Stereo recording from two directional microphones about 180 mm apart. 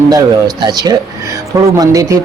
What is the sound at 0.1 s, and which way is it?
Speech, 20° right (ahead or behind).